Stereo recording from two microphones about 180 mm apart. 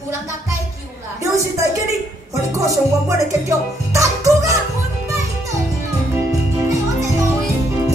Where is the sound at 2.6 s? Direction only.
15° right (ahead or behind).